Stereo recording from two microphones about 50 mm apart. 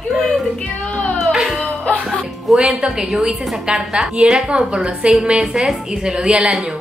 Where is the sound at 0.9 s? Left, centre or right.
Centre.